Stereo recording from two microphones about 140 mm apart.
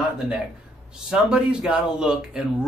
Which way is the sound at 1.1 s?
5° right (ahead or behind).